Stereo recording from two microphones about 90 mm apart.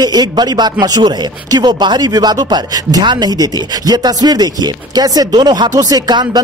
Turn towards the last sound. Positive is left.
turn(degrees=-50)  # may be behind; listen again after turning